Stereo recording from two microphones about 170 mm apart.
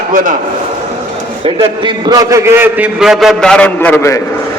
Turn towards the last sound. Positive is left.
turn(degrees=15)  # may be behind; listen again after turning